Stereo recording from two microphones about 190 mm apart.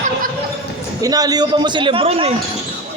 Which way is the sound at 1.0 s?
20° right (ahead or behind).